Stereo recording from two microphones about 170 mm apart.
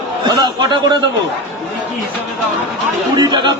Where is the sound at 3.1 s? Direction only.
25° right (ahead or behind).